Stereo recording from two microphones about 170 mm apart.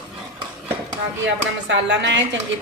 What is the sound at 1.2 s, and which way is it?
A woman's voice, 90° right.